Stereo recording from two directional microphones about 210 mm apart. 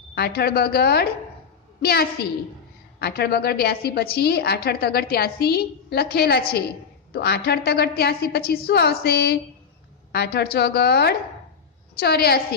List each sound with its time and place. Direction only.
0.1 s a woman's voice: 50° left (ahead or behind)